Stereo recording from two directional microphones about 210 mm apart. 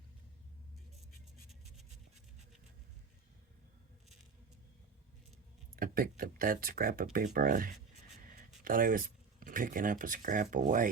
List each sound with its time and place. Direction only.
5.7 s speech: 45° right (ahead or behind)